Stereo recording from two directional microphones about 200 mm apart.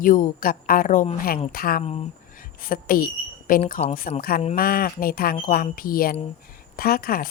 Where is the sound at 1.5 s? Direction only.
45° left (ahead or behind).